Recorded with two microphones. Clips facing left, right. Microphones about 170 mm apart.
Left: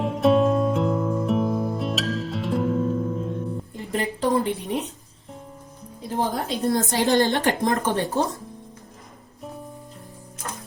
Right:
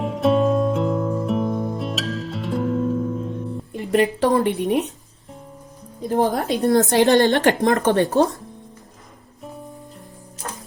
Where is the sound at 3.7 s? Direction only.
75° right (ahead or behind).